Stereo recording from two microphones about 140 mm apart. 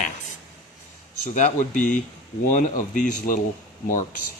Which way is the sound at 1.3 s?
65° left (ahead or behind).